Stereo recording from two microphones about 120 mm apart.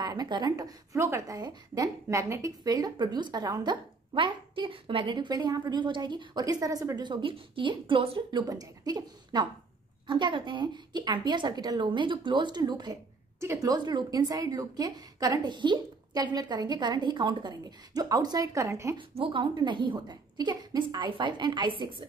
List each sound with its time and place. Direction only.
0.0 s a woman's voice: 35° right (ahead or behind)
8.3 s a woman's voice: 35° right (ahead or behind)
13.4 s a woman's voice: 25° right (ahead or behind)
18.9 s a woman's voice: 45° right (ahead or behind)